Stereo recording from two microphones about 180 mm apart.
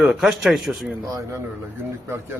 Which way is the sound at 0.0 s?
Centre (ahead or behind).